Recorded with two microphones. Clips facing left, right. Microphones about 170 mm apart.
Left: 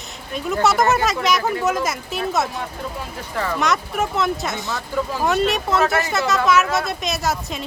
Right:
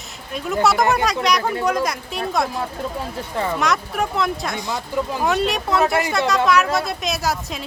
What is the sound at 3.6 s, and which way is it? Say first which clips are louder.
Speech: left 2 dB; centre (ahead or behind).